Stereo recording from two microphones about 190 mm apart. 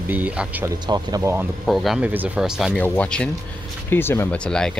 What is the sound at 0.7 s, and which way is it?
Speech, 20° right (ahead or behind).